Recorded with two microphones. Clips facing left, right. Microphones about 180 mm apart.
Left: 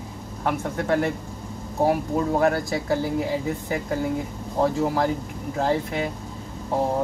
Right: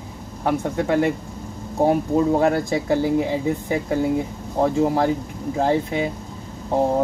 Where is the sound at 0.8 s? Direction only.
15° right (ahead or behind).